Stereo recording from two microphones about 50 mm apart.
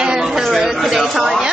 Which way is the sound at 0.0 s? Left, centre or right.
Centre.